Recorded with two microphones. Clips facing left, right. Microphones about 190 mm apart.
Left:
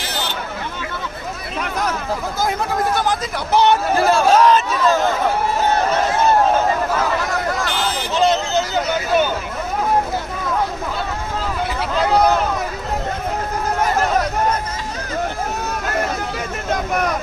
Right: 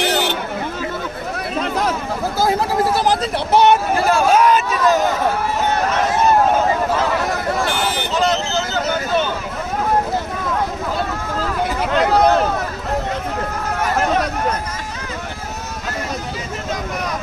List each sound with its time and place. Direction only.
1.6 s a sound: 25° right (ahead or behind)
3.0 s speech: 30° right (ahead or behind)
4.3 s speech: 10° right (ahead or behind)
8.7 s speech: 10° left (ahead or behind)